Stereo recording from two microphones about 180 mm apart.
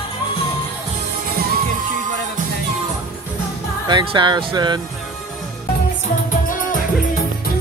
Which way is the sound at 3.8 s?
25° right (ahead or behind).